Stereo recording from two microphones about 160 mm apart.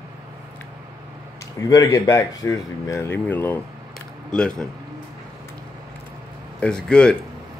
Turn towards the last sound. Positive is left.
turn(degrees=5)  # may be behind; listen again after turning